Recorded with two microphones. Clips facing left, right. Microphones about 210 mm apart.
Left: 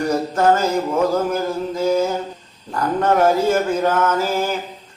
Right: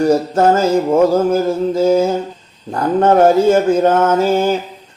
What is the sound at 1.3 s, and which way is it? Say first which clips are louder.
Mantra: right 7 dB; 30° right (ahead or behind).